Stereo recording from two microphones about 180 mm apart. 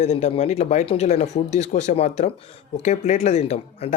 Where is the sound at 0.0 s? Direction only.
35° left (ahead or behind).